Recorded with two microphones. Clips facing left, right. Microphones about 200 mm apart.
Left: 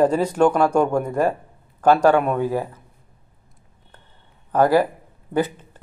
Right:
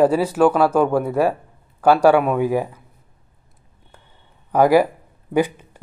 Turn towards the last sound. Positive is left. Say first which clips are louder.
# right 3 dB
turn(degrees=-10)  # may be behind; listen again after turning